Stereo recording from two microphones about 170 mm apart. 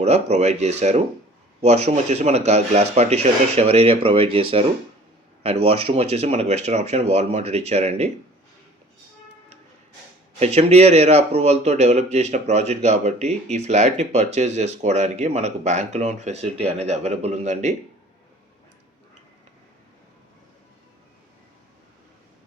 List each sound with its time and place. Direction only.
0.0 s speech: 40° right (ahead or behind)
10.4 s speech: 40° right (ahead or behind)